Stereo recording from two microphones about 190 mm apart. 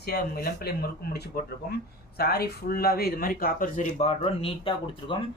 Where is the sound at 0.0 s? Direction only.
55° left (ahead or behind).